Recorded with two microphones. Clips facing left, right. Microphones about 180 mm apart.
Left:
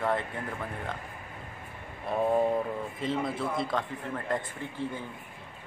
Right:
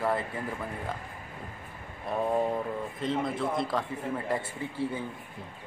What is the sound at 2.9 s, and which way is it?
Speech, centre (ahead or behind).